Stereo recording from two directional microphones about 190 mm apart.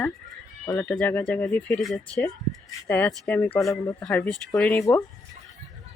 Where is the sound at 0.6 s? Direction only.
20° left (ahead or behind).